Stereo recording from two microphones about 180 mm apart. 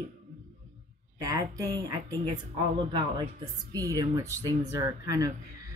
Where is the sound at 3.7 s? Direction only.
20° right (ahead or behind).